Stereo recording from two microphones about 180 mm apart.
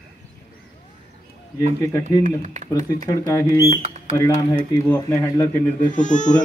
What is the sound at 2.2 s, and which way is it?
Speech, 45° right (ahead or behind).